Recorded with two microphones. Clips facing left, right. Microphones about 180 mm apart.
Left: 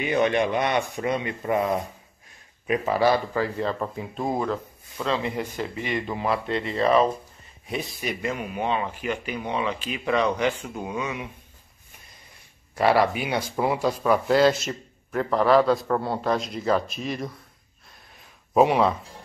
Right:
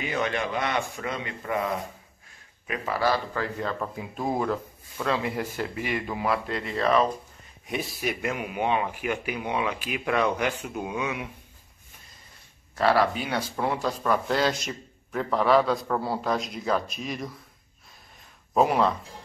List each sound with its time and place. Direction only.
0.0 s speech: 20° left (ahead or behind)
3.9 s speech: centre (ahead or behind)
12.7 s speech: 15° left (ahead or behind)
18.5 s speech: 5° left (ahead or behind)